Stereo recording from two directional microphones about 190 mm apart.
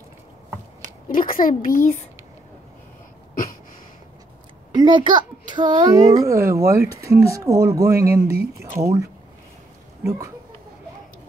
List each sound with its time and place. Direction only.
1.0 s speech: 45° left (ahead or behind)
4.7 s a woman's voice: 25° right (ahead or behind)